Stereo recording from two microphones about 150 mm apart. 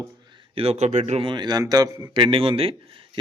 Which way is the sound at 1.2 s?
30° right (ahead or behind).